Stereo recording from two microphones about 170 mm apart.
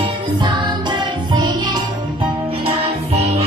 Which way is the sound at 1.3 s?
25° right (ahead or behind).